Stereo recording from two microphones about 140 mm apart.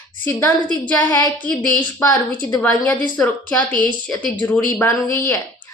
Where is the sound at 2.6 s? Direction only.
10° left (ahead or behind).